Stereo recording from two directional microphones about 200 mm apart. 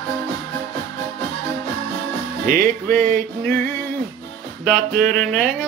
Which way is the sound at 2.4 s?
40° right (ahead or behind).